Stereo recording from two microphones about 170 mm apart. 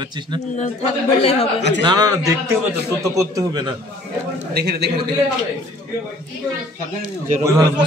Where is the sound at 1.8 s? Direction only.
20° right (ahead or behind).